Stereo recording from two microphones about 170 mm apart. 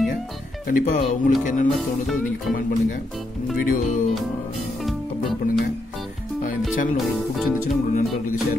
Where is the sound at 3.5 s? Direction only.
55° left (ahead or behind).